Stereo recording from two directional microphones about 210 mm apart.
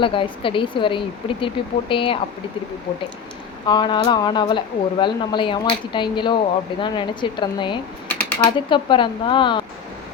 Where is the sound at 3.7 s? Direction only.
20° left (ahead or behind).